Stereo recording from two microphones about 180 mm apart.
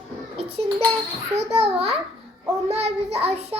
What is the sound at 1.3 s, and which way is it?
A child's voice, 35° right (ahead or behind).